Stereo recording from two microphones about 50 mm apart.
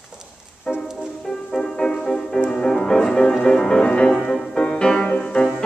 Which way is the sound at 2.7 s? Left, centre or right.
Centre.